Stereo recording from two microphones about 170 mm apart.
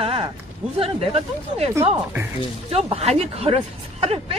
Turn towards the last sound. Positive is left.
turn(degrees=-35)  # may be behind; listen again after turning